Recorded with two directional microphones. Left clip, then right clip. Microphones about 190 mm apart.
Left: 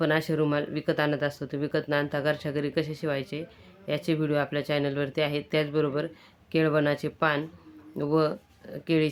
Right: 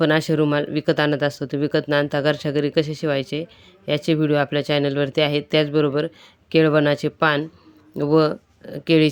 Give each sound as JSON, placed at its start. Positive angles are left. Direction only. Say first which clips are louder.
{"t": 0.0, "sound": "speech", "louder": "right 7 dB", "side_deg": -35}